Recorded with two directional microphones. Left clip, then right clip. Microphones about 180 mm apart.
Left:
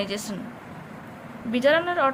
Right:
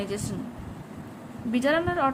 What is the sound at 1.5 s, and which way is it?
Speech, 20° right (ahead or behind).